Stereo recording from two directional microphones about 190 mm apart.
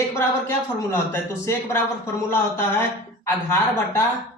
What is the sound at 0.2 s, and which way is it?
A woman's voice, 15° left (ahead or behind).